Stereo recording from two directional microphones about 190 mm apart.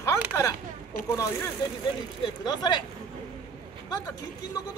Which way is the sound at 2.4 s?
20° left (ahead or behind).